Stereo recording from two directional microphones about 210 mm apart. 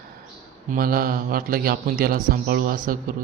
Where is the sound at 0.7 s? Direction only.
45° right (ahead or behind).